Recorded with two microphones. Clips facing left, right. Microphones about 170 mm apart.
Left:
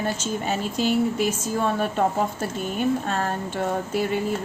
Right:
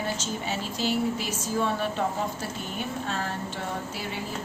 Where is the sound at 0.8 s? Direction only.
50° left (ahead or behind).